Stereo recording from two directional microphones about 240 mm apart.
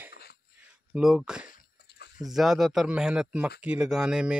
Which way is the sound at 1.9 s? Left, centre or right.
Left.